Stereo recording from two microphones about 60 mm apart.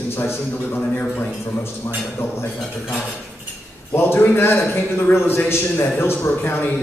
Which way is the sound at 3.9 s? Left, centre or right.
Left.